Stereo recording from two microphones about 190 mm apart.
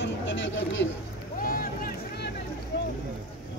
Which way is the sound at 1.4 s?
50° left (ahead or behind).